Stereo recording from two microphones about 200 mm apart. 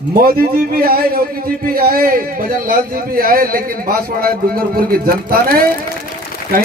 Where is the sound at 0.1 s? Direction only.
45° right (ahead or behind).